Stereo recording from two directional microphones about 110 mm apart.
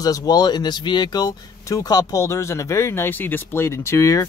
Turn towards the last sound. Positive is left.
turn(degrees=30)  # may be behind; listen again after turning